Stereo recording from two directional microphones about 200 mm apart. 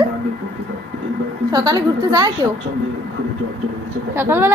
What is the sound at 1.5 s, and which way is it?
Speech, 20° right (ahead or behind).